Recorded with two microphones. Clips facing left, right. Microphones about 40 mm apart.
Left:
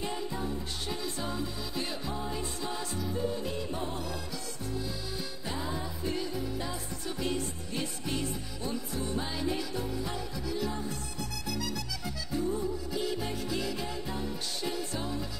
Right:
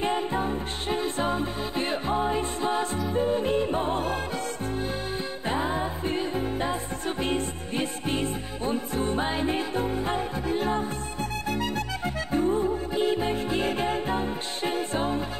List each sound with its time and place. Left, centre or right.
0.0 s music: right
5.5 s music: right